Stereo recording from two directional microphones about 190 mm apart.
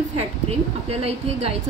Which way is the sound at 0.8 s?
30° right (ahead or behind).